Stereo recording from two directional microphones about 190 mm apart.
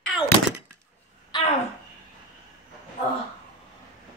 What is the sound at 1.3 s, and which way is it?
Speech, 25° left (ahead or behind).